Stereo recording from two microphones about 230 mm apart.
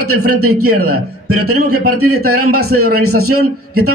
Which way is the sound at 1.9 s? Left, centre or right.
Right.